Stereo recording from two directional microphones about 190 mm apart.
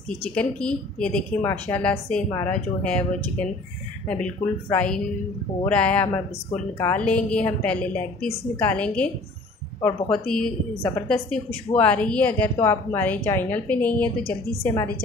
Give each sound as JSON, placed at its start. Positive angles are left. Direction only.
{"t": 0.3, "sound": "a woman's voice", "side_deg": 5}